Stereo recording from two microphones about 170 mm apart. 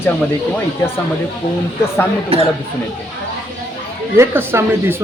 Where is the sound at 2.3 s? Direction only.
35° right (ahead or behind).